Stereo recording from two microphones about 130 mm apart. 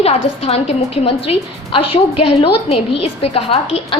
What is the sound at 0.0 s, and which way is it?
A woman's voice, 50° left (ahead or behind).